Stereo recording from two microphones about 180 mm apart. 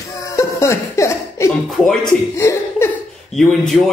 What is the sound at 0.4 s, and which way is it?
Music, 15° left (ahead or behind).